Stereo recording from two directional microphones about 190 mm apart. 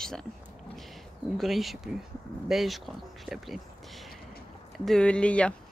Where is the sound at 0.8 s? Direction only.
Centre (ahead or behind).